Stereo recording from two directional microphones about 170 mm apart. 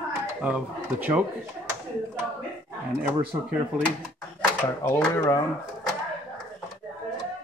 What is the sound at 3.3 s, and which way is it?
Speech, 20° right (ahead or behind).